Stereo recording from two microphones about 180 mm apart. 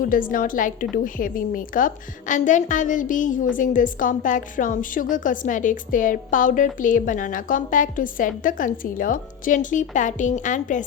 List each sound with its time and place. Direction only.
0.0 s a woman's voice: 50° left (ahead or behind)